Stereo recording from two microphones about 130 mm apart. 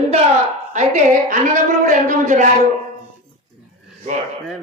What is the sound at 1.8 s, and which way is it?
Speech, 85° right.